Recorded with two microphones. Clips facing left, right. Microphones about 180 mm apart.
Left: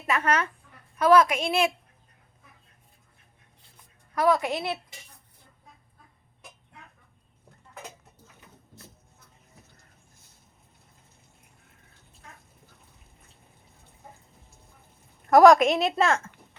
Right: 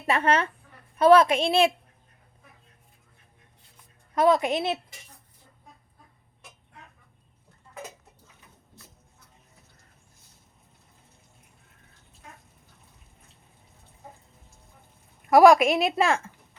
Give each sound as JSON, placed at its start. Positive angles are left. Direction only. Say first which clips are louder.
{"t": 0.1, "sound": "a woman's voice", "louder": "right 2 dB", "side_deg": -30}
{"t": 4.1, "sound": "a woman's voice", "louder": "right 2 dB", "side_deg": -20}
{"t": 15.3, "sound": "a woman's voice", "louder": "even", "side_deg": -10}